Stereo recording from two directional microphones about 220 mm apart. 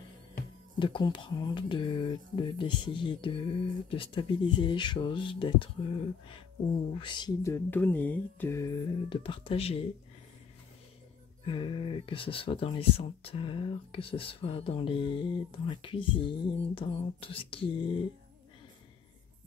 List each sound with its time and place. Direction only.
0.7 s speech: 20° left (ahead or behind)
6.9 s a sound: 20° left (ahead or behind)
11.4 s speech: 20° left (ahead or behind)